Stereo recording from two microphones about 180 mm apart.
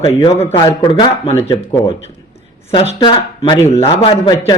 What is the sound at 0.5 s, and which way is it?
A man's voice, 25° left (ahead or behind).